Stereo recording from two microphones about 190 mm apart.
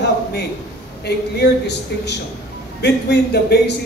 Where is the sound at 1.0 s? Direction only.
60° left (ahead or behind).